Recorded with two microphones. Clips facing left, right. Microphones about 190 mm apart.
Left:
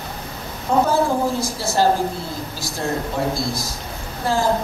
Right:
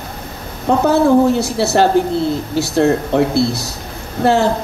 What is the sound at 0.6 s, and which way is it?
Speech, 70° right (ahead or behind).